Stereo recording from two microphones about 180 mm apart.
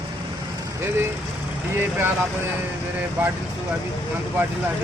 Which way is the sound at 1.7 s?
10° right (ahead or behind).